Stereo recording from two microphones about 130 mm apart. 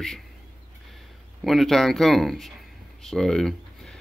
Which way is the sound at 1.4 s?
Centre (ahead or behind).